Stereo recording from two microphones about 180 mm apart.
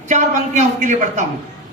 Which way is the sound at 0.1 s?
40° right (ahead or behind).